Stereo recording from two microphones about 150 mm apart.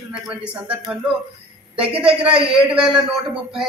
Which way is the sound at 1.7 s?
40° right (ahead or behind).